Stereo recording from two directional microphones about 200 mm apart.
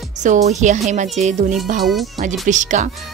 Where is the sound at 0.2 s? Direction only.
35° right (ahead or behind).